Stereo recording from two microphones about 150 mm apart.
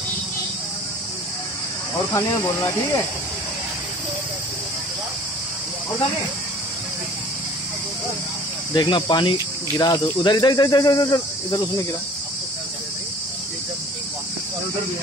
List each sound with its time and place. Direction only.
2.1 s cricket: 20° left (ahead or behind)
8.7 s cricket: 30° left (ahead or behind)